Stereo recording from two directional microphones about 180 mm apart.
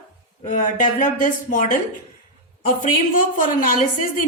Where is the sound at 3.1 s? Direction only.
50° left (ahead or behind).